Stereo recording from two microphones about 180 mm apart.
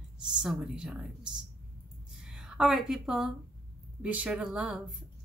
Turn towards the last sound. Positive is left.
turn(degrees=-5)  # may be behind; listen again after turning